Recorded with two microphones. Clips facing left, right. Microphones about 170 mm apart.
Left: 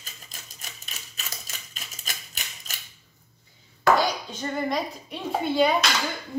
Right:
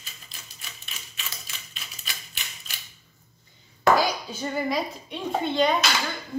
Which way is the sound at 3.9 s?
5° right (ahead or behind).